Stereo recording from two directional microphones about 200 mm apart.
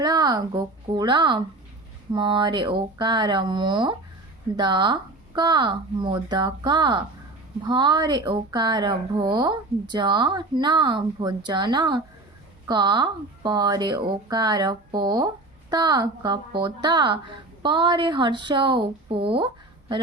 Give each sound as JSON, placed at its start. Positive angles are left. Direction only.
{"t": 0.0, "sound": "a woman's voice", "side_deg": -20}